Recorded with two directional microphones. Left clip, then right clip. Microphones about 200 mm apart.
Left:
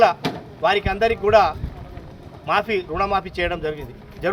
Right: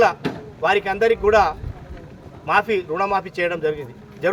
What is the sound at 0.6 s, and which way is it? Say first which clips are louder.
A man's voice: right 1 dB; 10° right (ahead or behind).